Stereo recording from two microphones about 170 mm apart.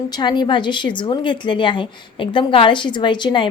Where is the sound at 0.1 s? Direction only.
25° left (ahead or behind).